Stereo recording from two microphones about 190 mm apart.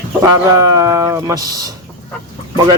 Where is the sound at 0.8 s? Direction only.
15° right (ahead or behind).